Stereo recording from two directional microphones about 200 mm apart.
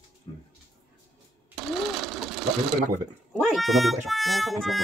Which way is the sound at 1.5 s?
Centre (ahead or behind).